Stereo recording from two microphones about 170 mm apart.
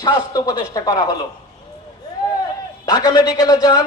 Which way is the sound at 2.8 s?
25° left (ahead or behind).